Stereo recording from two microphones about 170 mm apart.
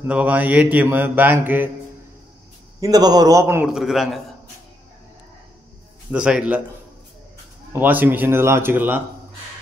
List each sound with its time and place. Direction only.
0.0 s mantra: 10° right (ahead or behind)
2.8 s a man's voice: 20° right (ahead or behind)
3.6 s a man's voice: centre (ahead or behind)
6.1 s mantra: 5° right (ahead or behind)
7.7 s mantra: 10° right (ahead or behind)